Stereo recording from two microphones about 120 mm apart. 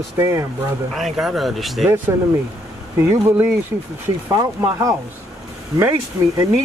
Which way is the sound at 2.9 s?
20° right (ahead or behind).